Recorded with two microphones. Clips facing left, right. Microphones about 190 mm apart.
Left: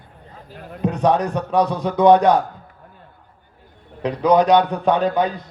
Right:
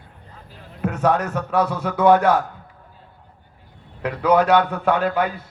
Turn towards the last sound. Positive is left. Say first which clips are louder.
# left 2 dB
turn(degrees=15)  # may be behind; listen again after turning